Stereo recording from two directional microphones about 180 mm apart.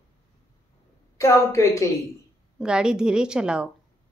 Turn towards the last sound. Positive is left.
turn(degrees=-5)  # may be behind; listen again after turning